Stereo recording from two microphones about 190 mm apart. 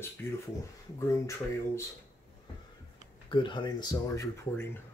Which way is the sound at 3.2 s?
25° left (ahead or behind).